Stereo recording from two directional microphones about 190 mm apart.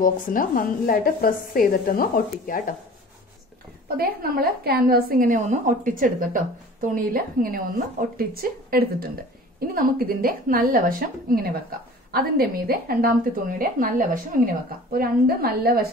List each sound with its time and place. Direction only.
0.0 s a woman's voice: 45° left (ahead or behind)
3.9 s a woman's voice: 50° right (ahead or behind)